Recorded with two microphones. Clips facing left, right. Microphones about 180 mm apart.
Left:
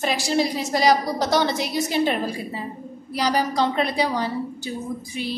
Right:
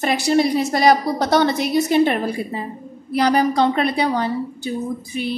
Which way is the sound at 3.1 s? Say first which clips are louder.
Right 5 dB; 55° right (ahead or behind).